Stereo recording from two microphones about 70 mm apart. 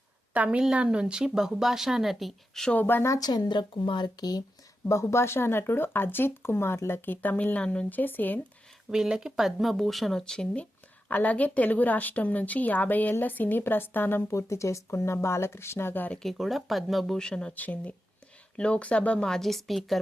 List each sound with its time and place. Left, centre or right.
0.3 s a woman's voice: centre
2.7 s speech: left
3.1 s speech: left
4.9 s speech: left
8.9 s speech: centre; by 16.0 s left
16.2 s speech: centre
17.5 s speech: left; by 20.0 s centre